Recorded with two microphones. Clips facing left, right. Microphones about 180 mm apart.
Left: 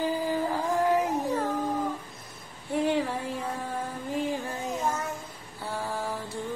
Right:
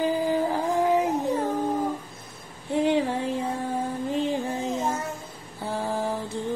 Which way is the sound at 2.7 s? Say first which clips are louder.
Right 4 dB; 20° right (ahead or behind).